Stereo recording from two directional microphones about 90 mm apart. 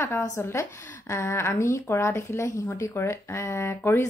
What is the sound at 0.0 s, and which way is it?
A woman's voice, 30° left (ahead or behind).